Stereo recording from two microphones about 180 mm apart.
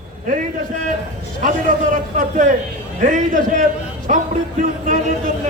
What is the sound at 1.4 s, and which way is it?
A man's voice, 45° right (ahead or behind).